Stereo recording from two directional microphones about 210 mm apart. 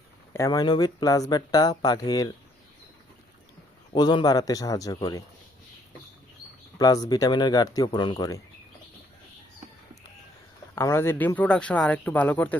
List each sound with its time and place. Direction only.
0.3 s speech: 15° left (ahead or behind)
3.9 s speech: 20° left (ahead or behind)
6.7 s speech: 15° left (ahead or behind)
10.8 s speech: 10° left (ahead or behind)